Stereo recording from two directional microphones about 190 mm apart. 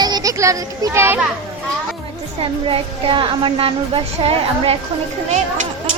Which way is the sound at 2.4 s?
30° right (ahead or behind).